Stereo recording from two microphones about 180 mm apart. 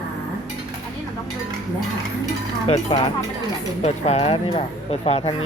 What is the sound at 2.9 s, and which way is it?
Speech, 30° left (ahead or behind).